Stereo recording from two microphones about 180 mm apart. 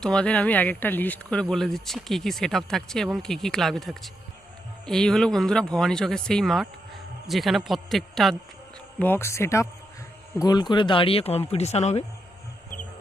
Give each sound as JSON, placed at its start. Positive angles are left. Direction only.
{"t": 0.0, "sound": "speech", "side_deg": 5}